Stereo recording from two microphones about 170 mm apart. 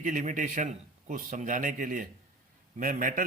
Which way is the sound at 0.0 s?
45° right (ahead or behind).